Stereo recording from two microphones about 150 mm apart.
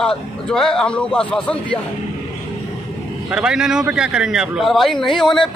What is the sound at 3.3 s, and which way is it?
A man's voice, 5° right (ahead or behind).